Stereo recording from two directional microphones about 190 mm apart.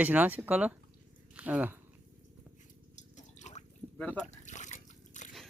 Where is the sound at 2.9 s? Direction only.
40° left (ahead or behind).